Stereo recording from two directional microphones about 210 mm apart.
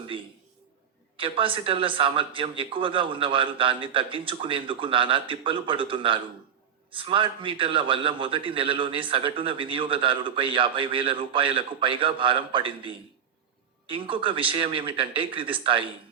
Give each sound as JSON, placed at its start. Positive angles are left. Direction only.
{"t": 1.1, "sound": "a man's voice", "side_deg": -25}